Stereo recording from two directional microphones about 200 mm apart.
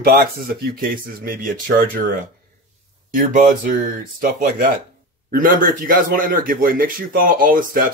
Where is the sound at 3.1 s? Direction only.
40° right (ahead or behind).